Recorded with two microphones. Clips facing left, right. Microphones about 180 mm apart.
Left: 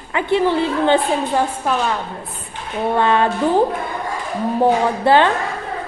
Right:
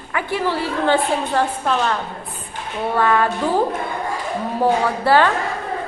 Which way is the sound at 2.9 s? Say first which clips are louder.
Left 1 dB; 25° left (ahead or behind).